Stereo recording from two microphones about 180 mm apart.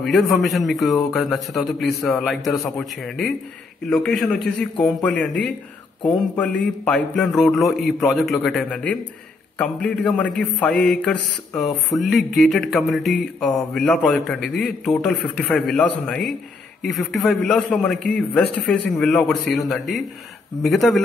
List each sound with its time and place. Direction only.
0.0 s mantra: centre (ahead or behind)
6.6 s mantra: 5° left (ahead or behind)
9.6 s a man's voice: 5° left (ahead or behind)
10.8 s mantra: 5° left (ahead or behind)